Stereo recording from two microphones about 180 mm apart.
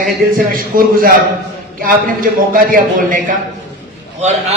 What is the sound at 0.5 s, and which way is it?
A man's voice, 50° right (ahead or behind).